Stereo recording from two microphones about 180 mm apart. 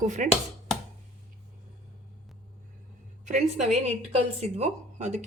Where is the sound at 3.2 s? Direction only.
40° right (ahead or behind).